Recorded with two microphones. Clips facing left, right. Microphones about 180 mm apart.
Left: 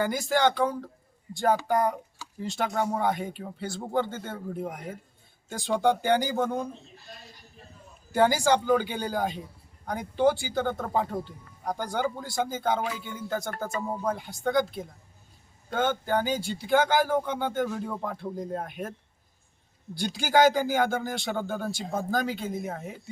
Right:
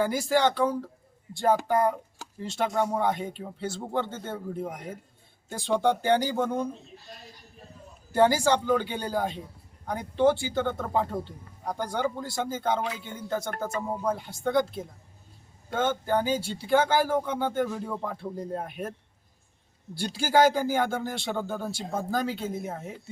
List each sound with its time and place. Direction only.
0.0 s speech: 5° right (ahead or behind)
8.1 s speech: centre (ahead or behind)
13.9 s speech: 10° right (ahead or behind)
14.4 s speech: centre (ahead or behind)
16.4 s speech: 30° right (ahead or behind)
16.6 s speech: centre (ahead or behind)
20.1 s speech: centre (ahead or behind)